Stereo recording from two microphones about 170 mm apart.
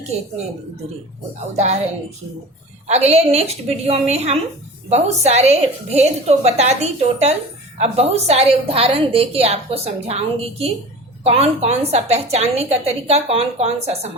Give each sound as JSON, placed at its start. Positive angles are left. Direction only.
{"t": 1.5, "sound": "a woman's voice", "side_deg": -40}
{"t": 2.8, "sound": "a woman's voice", "side_deg": -40}